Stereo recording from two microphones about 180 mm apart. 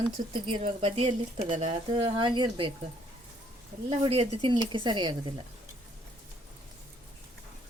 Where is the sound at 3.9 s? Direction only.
30° right (ahead or behind).